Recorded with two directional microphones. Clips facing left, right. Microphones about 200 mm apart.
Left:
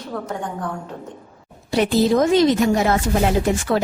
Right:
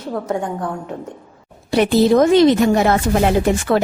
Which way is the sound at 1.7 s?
65° right (ahead or behind).